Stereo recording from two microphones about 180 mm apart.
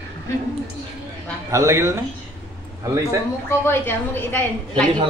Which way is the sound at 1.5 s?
15° right (ahead or behind).